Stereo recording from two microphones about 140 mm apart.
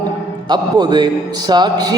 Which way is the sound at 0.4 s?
30° right (ahead or behind).